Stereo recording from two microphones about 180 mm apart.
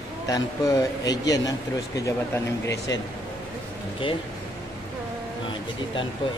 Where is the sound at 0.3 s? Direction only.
20° left (ahead or behind).